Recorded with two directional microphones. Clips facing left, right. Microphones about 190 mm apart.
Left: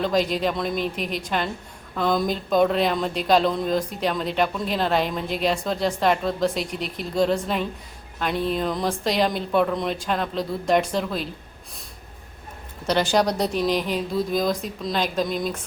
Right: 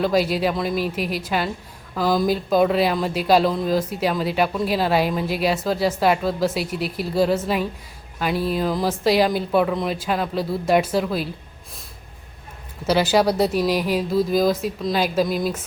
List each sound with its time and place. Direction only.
0.0 s speech: 5° right (ahead or behind)
12.9 s speech: 5° right (ahead or behind)